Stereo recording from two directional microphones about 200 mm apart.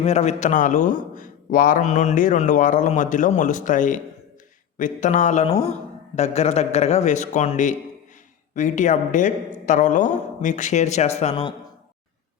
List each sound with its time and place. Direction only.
0.0 s a man's voice: 30° left (ahead or behind)